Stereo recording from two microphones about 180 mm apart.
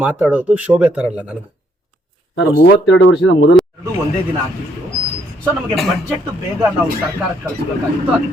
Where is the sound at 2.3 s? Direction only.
75° left (ahead or behind).